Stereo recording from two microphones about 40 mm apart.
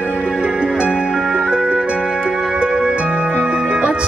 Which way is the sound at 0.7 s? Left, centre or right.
Right.